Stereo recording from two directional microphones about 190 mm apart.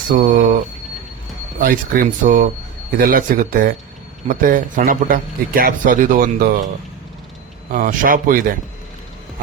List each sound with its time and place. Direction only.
0.1 s a man's voice: 45° right (ahead or behind)
1.5 s a man's voice: 50° right (ahead or behind)
7.7 s a man's voice: 45° right (ahead or behind)